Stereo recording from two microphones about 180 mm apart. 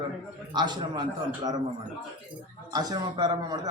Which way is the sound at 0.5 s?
25° right (ahead or behind).